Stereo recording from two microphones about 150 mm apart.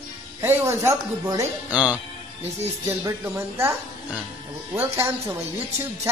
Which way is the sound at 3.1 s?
15° right (ahead or behind).